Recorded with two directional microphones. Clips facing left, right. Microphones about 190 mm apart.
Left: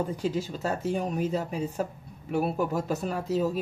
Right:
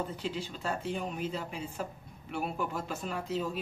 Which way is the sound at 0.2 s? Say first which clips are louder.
Left 7 dB; 45° left (ahead or behind).